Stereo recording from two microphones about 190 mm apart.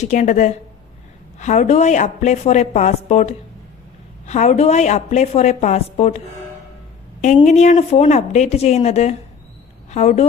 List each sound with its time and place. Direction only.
0.0 s a woman's voice: 40° left (ahead or behind)
7.4 s a woman's voice: 40° left (ahead or behind)